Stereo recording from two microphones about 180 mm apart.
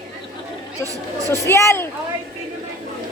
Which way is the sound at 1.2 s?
20° right (ahead or behind).